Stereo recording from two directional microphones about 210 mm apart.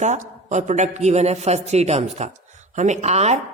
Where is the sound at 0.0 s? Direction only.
35° right (ahead or behind).